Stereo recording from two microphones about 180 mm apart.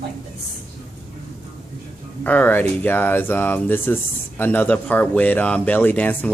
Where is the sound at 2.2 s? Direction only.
10° left (ahead or behind).